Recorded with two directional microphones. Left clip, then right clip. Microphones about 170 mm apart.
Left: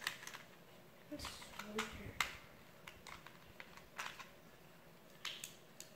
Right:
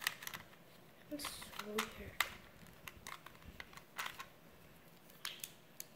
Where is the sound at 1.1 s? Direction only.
55° right (ahead or behind).